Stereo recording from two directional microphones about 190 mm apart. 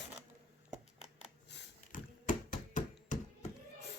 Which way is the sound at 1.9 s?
45° left (ahead or behind).